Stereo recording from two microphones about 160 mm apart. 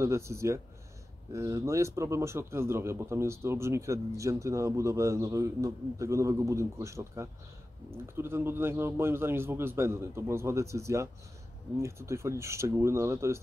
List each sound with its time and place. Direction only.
0.0 s speech: 15° right (ahead or behind)